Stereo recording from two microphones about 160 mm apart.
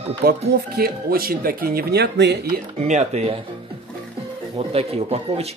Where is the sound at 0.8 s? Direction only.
70° right (ahead or behind); by 2.6 s 90° right.